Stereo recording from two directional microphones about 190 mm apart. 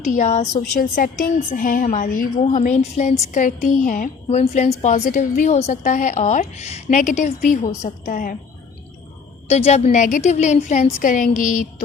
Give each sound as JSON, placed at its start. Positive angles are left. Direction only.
{"t": 0.0, "sound": "a woman's voice", "side_deg": 40}
{"t": 9.5, "sound": "a woman's voice", "side_deg": 35}